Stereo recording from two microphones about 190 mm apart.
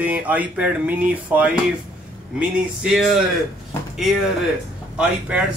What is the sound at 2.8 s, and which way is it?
Speech, centre (ahead or behind).